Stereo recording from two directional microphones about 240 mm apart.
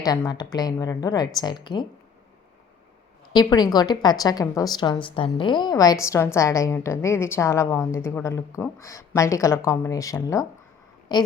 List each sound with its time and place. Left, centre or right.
0.0 s speech: centre
3.3 s speech: centre